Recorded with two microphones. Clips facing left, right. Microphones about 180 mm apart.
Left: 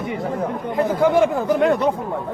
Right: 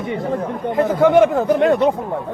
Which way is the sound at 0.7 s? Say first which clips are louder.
Right 4 dB; 20° right (ahead or behind).